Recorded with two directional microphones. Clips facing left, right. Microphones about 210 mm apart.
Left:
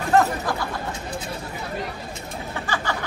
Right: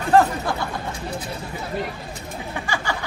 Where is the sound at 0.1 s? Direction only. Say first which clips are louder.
Right 2 dB; 30° right (ahead or behind).